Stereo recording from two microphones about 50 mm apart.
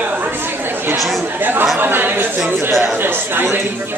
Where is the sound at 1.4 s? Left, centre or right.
Right.